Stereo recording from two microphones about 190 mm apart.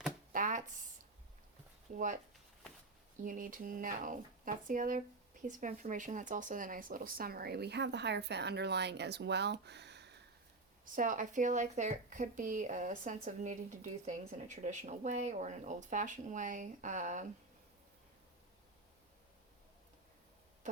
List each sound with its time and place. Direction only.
0.3 s a sound: 45° right (ahead or behind)
3.2 s speech: 45° right (ahead or behind); by 10.2 s 65° right (ahead or behind)
10.9 s speech: 45° right (ahead or behind)